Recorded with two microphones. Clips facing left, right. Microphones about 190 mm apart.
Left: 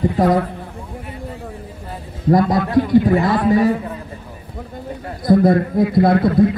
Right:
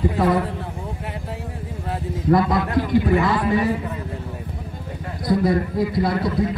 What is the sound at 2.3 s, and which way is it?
A man's voice, 40° left (ahead or behind).